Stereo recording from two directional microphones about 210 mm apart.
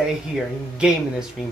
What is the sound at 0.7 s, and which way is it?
Speech, 5° right (ahead or behind).